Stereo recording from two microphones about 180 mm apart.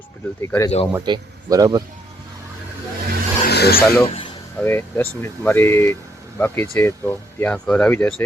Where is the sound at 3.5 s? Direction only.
60° left (ahead or behind).